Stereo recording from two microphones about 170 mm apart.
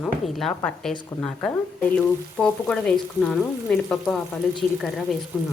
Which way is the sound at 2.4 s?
5° left (ahead or behind).